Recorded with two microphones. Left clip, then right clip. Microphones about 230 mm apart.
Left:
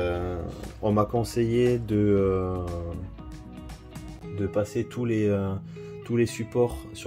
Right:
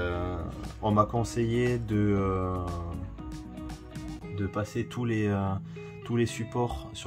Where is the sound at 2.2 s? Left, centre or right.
Centre.